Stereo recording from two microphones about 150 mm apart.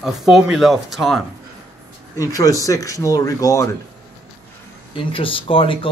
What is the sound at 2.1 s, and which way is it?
Speech, 20° left (ahead or behind).